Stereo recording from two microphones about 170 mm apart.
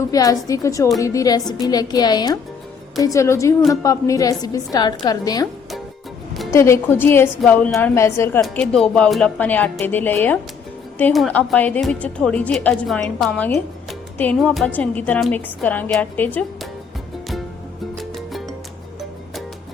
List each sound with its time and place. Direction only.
0.1 s a woman's voice: 20° left (ahead or behind)
6.5 s a woman's voice: 15° left (ahead or behind)
8.4 s a woman's voice: 5° left (ahead or behind)
17.9 s music: centre (ahead or behind)